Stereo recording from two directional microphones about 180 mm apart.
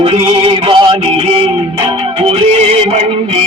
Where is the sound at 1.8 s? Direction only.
30° right (ahead or behind).